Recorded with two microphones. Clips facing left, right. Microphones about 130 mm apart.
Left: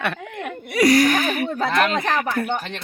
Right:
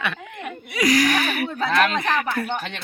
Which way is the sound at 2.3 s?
50° left (ahead or behind).